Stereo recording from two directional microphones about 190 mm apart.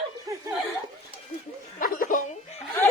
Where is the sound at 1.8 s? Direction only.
45° left (ahead or behind).